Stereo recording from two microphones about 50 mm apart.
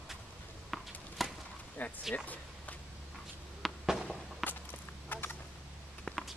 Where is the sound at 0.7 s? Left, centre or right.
Centre.